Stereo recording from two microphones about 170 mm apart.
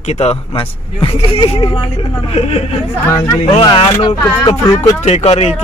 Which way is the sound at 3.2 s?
25° left (ahead or behind).